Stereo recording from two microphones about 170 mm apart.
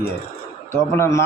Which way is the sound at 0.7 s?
15° left (ahead or behind).